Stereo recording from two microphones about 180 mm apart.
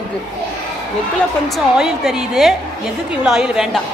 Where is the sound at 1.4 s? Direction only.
Centre (ahead or behind).